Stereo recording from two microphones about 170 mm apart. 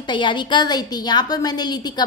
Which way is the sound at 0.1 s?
25° left (ahead or behind).